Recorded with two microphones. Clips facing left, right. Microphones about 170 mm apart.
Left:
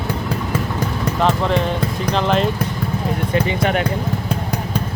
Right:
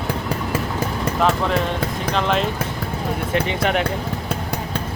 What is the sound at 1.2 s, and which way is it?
Speech, centre (ahead or behind).